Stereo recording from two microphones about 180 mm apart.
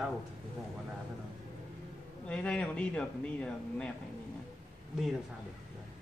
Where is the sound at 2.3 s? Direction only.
5° left (ahead or behind).